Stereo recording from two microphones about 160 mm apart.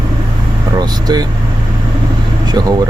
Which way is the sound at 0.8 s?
25° right (ahead or behind).